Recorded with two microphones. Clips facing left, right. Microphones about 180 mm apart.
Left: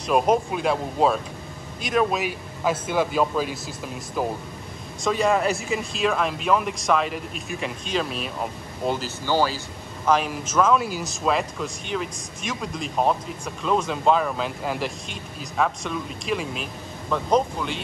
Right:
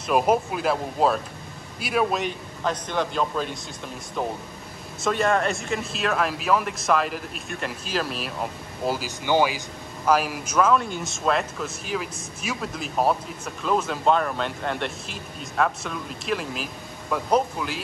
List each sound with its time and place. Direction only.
0.0 s speech: centre (ahead or behind)
9.2 s a man's voice: 15° right (ahead or behind)
10.7 s speech: 5° left (ahead or behind)